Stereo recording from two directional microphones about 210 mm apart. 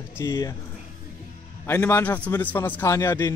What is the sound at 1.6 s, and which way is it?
A man's voice, 10° left (ahead or behind).